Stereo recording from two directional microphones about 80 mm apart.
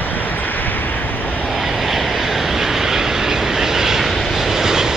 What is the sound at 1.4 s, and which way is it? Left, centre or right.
Vehicle, centre.